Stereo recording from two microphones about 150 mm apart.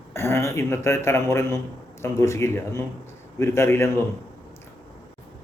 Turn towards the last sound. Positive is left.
turn(degrees=15)  # may be behind; listen again after turning